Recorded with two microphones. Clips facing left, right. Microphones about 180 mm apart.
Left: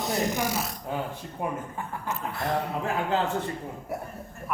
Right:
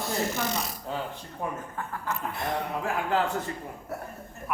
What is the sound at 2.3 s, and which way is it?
Speech, 20° right (ahead or behind).